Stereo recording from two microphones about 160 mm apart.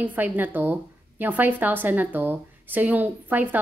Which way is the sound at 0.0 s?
10° right (ahead or behind).